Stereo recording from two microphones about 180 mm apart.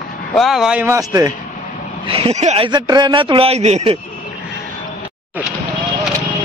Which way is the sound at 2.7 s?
25° right (ahead or behind).